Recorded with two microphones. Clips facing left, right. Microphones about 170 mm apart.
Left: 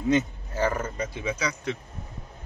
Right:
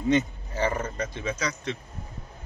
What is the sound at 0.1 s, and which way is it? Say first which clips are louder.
Speech: even; centre (ahead or behind).